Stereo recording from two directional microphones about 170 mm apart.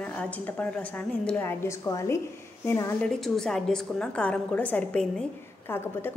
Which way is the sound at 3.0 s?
Centre (ahead or behind).